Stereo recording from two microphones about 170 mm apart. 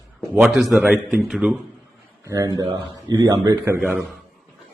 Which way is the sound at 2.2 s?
20° right (ahead or behind).